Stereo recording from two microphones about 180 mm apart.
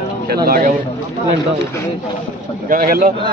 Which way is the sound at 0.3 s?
50° right (ahead or behind).